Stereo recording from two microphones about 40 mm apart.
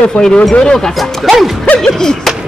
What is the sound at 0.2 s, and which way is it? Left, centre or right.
Speech, left.